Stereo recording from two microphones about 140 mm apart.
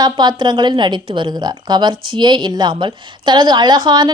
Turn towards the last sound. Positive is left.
turn(degrees=-30)  # may be behind; listen again after turning